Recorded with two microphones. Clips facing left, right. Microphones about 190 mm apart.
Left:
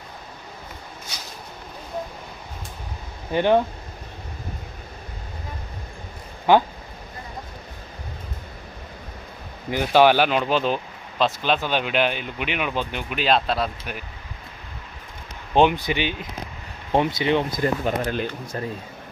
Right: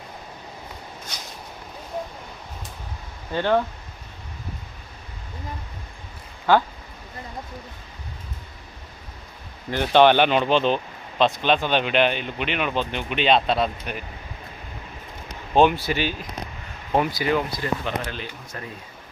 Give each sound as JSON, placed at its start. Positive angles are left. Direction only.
{"t": 1.1, "sound": "vehicle", "side_deg": 10}
{"t": 3.3, "sound": "speech", "side_deg": 15}
{"t": 6.5, "sound": "speech", "side_deg": 15}
{"t": 9.6, "sound": "speech", "side_deg": 5}
{"t": 15.5, "sound": "speech", "side_deg": 15}
{"t": 17.5, "sound": "speech", "side_deg": 45}
{"t": 18.5, "sound": "speech", "side_deg": 35}